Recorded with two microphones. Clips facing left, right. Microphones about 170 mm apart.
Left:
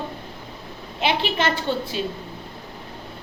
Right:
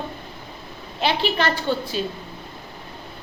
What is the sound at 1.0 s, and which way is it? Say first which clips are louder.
Speech: right 1 dB; 20° left (ahead or behind).